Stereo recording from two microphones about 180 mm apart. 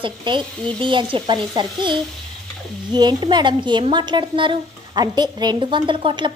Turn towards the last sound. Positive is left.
turn(degrees=-25)  # may be behind; listen again after turning